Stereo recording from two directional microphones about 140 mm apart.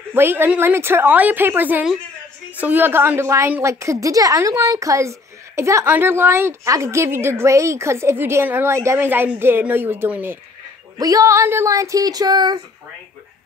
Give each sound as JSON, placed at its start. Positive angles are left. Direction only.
{"t": 0.1, "sound": "a woman's voice", "side_deg": -15}
{"t": 11.0, "sound": "a woman's voice", "side_deg": -25}